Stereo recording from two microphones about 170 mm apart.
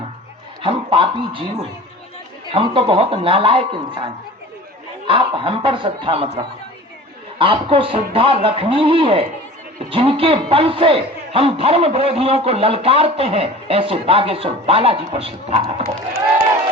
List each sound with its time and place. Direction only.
0.6 s a man's voice: 30° right (ahead or behind)
5.0 s a man's voice: 30° right (ahead or behind)